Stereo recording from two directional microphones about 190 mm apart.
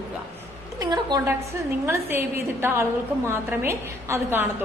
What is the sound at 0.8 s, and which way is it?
A woman's voice, 20° right (ahead or behind).